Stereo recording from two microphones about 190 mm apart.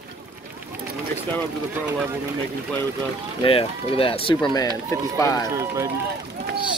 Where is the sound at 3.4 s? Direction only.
30° left (ahead or behind).